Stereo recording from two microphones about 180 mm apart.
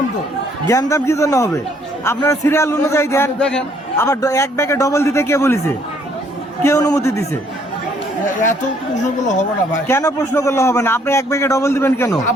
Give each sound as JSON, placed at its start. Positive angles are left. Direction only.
{"t": 0.7, "sound": "a man's voice", "side_deg": 15}
{"t": 4.0, "sound": "a man's voice", "side_deg": 20}
{"t": 9.0, "sound": "speech", "side_deg": 40}
{"t": 9.8, "sound": "a man's voice", "side_deg": 15}